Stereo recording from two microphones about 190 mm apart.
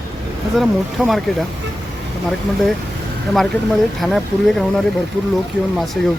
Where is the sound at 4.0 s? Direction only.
Centre (ahead or behind).